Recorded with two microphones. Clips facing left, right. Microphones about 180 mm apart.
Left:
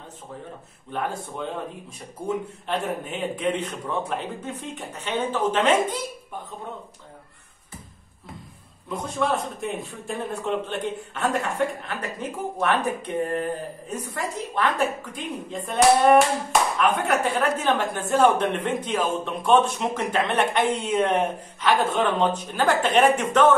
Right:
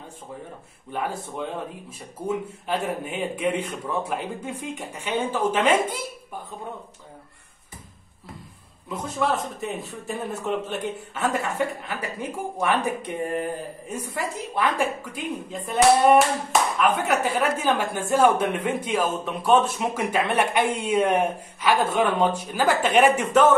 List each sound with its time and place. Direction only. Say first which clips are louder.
0.9 s a man's voice: even; 10° right (ahead or behind)
8.8 s a man's voice: even; 5° right (ahead or behind)